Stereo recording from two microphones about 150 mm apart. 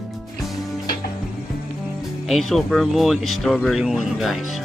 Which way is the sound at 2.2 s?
Centre (ahead or behind).